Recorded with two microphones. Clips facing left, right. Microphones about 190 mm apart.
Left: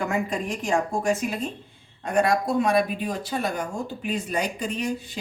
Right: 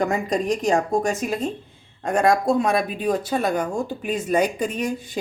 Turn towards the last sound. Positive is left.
turn(degrees=-50)  # may be behind; listen again after turning